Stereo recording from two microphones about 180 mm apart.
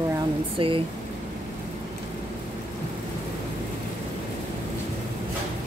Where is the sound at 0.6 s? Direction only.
30° right (ahead or behind).